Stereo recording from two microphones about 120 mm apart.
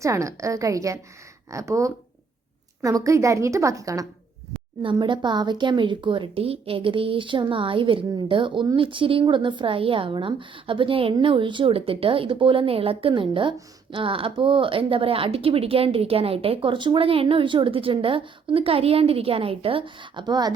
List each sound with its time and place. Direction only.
0.0 s a woman's voice: 25° right (ahead or behind)
4.8 s speech: 45° right (ahead or behind)